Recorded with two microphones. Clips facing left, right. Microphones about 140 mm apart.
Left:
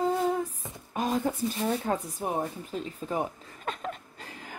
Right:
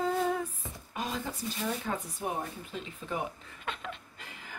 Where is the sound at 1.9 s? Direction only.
30° left (ahead or behind).